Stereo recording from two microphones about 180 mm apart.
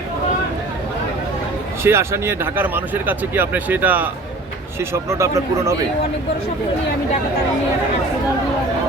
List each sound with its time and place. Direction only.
1.8 s speech: 15° right (ahead or behind)